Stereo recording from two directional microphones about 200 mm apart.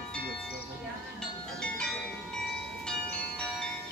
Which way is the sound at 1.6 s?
5° left (ahead or behind).